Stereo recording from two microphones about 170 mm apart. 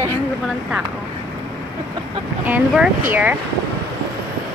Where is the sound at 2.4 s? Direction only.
10° right (ahead or behind).